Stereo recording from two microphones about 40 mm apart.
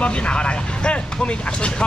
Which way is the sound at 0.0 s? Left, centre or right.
Left.